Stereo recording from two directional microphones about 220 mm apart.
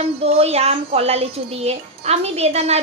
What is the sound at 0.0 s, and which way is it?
A woman's voice, 30° right (ahead or behind).